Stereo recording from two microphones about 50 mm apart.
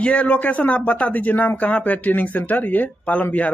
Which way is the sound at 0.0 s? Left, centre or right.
Left.